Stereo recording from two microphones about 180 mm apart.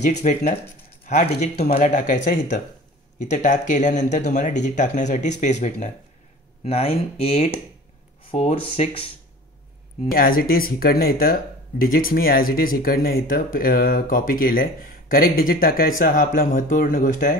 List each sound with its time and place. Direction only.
0.0 s speech: 40° left (ahead or behind)
10.1 s speech: 55° left (ahead or behind)